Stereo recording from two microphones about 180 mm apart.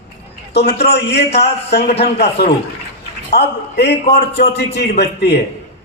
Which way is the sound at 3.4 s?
70° left (ahead or behind).